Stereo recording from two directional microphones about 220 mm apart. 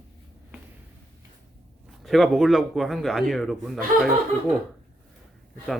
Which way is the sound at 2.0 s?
Centre (ahead or behind).